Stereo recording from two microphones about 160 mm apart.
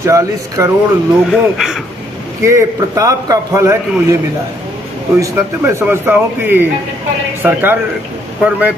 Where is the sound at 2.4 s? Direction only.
20° right (ahead or behind).